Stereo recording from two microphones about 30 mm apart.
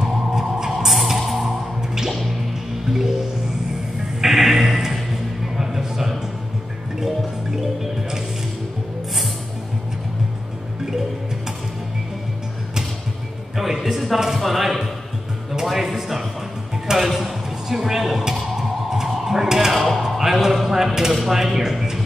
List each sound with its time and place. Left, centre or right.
0.0 s vehicle: right
0.7 s vehicle: centre
2.9 s music: centre
4.2 s music: centre
7.5 s music: centre
13.6 s a sound: centre
14.3 s a sound: centre
15.6 s music: centre
20.6 s mechanisms: centre
21.1 s a sound: centre
21.4 s a sound: centre
21.6 s music: centre